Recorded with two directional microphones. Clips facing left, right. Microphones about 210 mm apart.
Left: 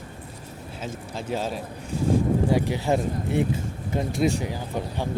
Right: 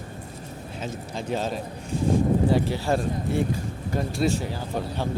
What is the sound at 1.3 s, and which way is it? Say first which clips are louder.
Speech: right 1 dB; 5° left (ahead or behind).